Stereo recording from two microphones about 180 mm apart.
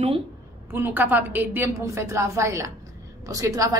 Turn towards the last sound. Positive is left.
turn(degrees=-20)  # may be behind; listen again after turning